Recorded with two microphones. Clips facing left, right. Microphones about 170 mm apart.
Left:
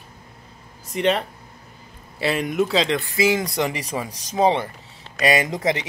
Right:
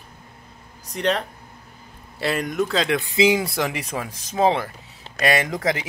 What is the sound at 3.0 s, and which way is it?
Speech, 15° right (ahead or behind).